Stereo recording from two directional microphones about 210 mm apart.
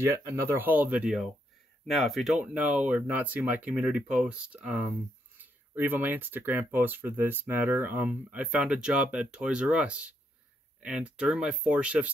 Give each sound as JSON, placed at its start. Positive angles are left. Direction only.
{"t": 0.0, "sound": "speech", "side_deg": -15}